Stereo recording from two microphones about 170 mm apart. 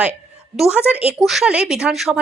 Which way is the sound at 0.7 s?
10° right (ahead or behind).